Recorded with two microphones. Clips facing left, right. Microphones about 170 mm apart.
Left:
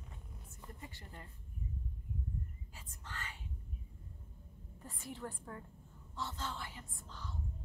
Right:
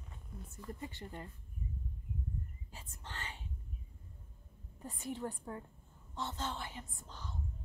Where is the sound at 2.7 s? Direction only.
30° right (ahead or behind).